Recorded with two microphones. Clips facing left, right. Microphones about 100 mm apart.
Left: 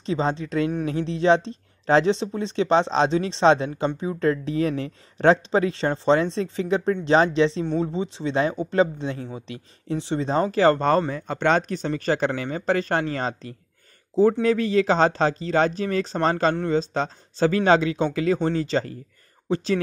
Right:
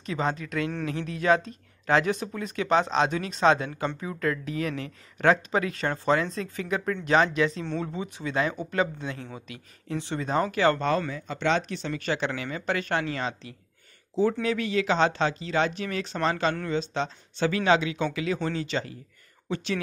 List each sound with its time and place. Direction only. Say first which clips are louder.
0.0 s speech: left 4 dB; 30° left (ahead or behind)